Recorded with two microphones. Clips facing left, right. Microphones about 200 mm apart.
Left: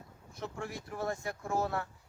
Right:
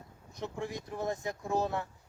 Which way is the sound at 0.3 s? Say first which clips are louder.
Right 3 dB; 15° right (ahead or behind).